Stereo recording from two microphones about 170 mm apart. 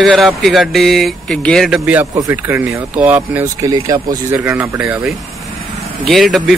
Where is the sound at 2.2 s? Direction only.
15° right (ahead or behind).